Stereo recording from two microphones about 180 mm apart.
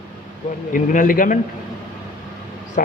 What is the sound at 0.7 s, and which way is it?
Speech, 50° left (ahead or behind).